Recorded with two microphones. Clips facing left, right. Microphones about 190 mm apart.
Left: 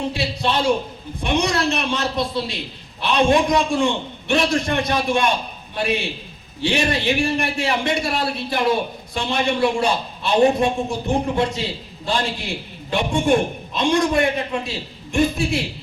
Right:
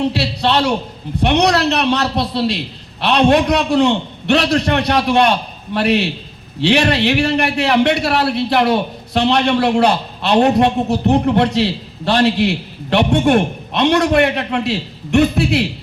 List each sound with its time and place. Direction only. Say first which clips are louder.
0.0 s a man's voice: right 5 dB; 70° right (ahead or behind)